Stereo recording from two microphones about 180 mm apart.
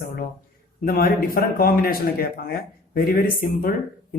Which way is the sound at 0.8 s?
55° left (ahead or behind).